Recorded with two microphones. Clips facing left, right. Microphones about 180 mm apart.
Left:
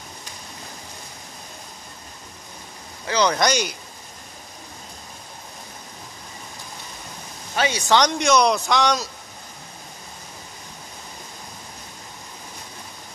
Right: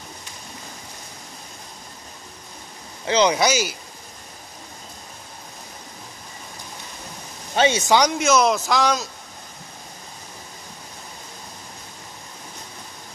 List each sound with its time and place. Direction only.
3.1 s speech: 20° right (ahead or behind)
3.3 s speech: 5° right (ahead or behind)
7.5 s speech: 25° right (ahead or behind)
7.9 s a man's voice: 5° right (ahead or behind)